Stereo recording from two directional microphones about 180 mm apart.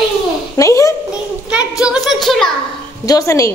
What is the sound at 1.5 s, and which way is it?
A woman's voice, 5° right (ahead or behind).